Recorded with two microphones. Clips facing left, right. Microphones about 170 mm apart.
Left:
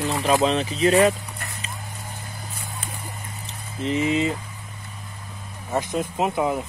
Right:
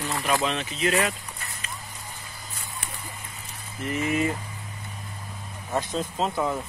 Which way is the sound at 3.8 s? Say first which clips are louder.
Left 4 dB; 20° left (ahead or behind).